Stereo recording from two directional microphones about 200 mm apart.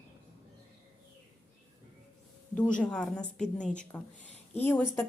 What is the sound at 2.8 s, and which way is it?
A woman's voice, 5° left (ahead or behind).